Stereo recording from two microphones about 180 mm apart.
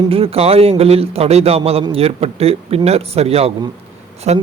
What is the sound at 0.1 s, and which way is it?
Speech, 30° right (ahead or behind).